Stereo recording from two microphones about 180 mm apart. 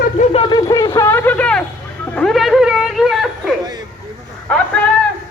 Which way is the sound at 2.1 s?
Centre (ahead or behind).